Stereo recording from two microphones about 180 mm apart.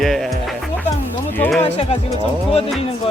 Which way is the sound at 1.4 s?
5° left (ahead or behind).